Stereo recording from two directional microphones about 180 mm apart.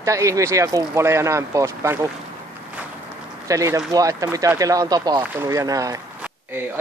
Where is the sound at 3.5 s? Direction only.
15° right (ahead or behind).